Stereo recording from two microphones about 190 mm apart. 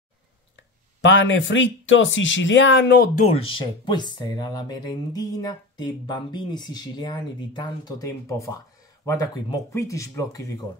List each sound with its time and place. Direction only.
0.6 s speech: 80° left
3.2 s speech: 35° left (ahead or behind)
3.5 s speech: 25° left (ahead or behind)